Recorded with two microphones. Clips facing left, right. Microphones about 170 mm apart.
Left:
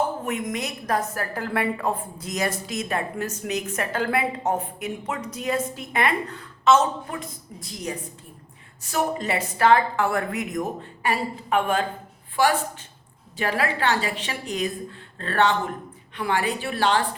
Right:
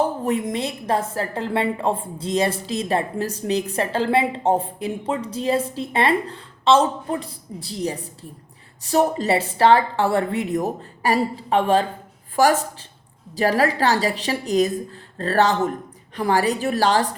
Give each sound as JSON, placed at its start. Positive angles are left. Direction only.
{"t": 0.3, "sound": "a woman's voice", "side_deg": -30}
{"t": 12.4, "sound": "a woman's voice", "side_deg": -45}